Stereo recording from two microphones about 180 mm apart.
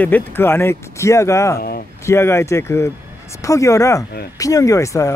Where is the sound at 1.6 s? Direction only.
55° left (ahead or behind).